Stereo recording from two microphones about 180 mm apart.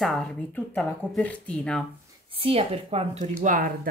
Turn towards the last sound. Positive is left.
turn(degrees=-45)  # may be behind; listen again after turning